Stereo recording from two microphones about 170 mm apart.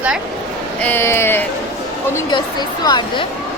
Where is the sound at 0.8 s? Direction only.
10° left (ahead or behind).